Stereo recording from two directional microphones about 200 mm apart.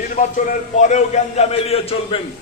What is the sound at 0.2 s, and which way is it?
A man's voice, 40° left (ahead or behind).